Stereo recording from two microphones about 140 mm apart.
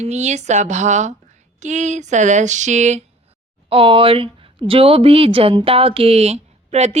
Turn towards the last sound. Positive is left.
turn(degrees=-50)  # may be behind; listen again after turning